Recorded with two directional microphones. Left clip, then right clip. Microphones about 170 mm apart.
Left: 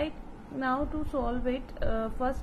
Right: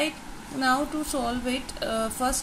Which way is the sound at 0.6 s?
15° right (ahead or behind).